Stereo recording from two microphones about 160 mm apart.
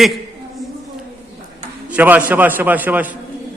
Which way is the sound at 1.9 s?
10° right (ahead or behind).